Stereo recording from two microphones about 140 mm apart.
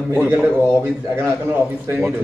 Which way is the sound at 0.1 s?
15° right (ahead or behind).